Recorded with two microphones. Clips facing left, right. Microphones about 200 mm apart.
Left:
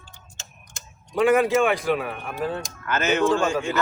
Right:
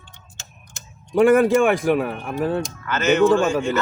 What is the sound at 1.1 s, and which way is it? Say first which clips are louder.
Speech: right 4 dB; 45° right (ahead or behind).